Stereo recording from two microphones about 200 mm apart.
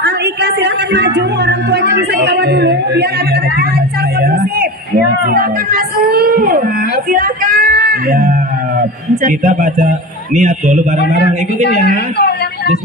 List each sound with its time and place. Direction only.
0.0 s a woman's voice: 55° right (ahead or behind)
4.2 s a woman's voice: 50° right (ahead or behind)
11.6 s a woman's voice: 55° left (ahead or behind)